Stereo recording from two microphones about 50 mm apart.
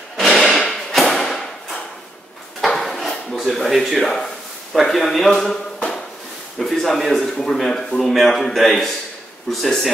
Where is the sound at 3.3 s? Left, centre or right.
Centre.